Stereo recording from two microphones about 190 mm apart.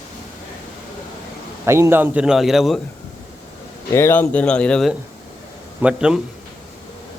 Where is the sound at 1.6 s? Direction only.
15° right (ahead or behind).